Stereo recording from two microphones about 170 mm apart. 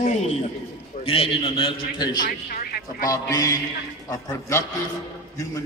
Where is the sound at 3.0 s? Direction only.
20° left (ahead or behind).